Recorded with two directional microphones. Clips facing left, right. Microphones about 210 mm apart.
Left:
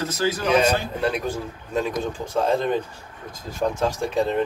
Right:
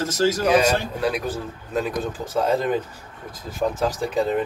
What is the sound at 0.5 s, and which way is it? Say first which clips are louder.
A man's voice: right 1 dB; centre (ahead or behind).